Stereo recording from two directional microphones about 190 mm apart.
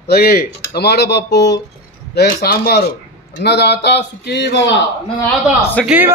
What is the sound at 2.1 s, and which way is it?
Speech, 55° left (ahead or behind).